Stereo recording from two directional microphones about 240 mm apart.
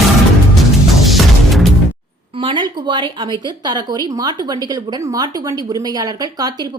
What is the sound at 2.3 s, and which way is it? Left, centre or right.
A woman's voice, right.